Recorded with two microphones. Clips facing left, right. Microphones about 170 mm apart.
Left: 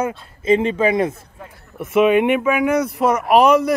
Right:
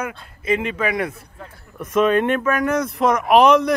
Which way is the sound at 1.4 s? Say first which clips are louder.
Left 2 dB; 10° left (ahead or behind).